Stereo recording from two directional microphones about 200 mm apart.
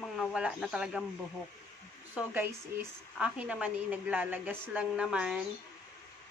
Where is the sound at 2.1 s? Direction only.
10° right (ahead or behind).